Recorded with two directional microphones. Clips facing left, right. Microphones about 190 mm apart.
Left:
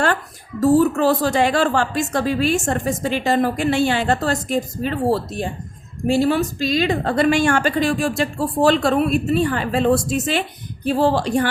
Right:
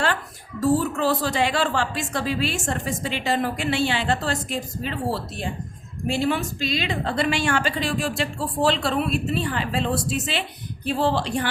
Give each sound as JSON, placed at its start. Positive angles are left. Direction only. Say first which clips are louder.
{"t": 0.6, "sound": "a woman's voice", "louder": "left 6 dB", "side_deg": 45}